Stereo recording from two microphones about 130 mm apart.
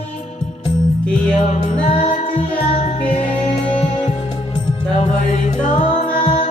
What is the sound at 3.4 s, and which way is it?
Music, 40° left (ahead or behind).